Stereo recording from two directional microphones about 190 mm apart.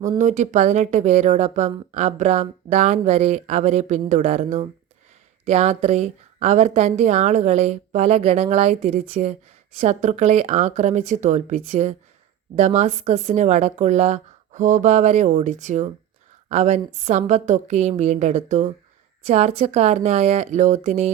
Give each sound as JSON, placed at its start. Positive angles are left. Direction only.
{"t": 0.2, "sound": "speech", "side_deg": -40}